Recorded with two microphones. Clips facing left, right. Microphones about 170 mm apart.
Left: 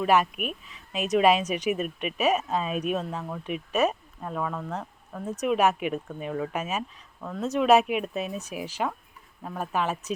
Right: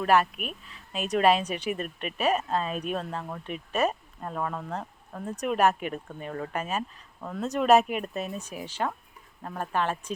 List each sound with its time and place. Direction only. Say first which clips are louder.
0.0 s speech: left 1 dB; 5° left (ahead or behind)
0.4 s speech: left 4 dB; 35° right (ahead or behind)
1.2 s speech: left 1 dB; 5° left (ahead or behind)
1.5 s speech: left 4 dB; 30° right (ahead or behind)
1.7 s speech: left 4 dB; 5° left (ahead or behind)